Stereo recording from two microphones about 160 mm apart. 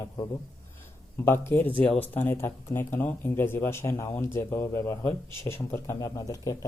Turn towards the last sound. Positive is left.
turn(degrees=20)  # may be behind; listen again after turning